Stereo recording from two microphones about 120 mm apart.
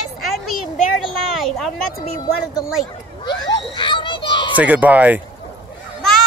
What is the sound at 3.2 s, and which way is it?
Children playing, 40° left (ahead or behind).